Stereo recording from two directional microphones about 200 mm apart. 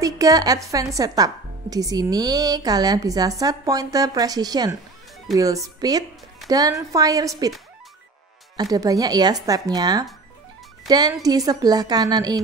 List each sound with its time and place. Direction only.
0.0 s a woman's voice: 20° right (ahead or behind)
8.5 s a woman's voice: 20° right (ahead or behind)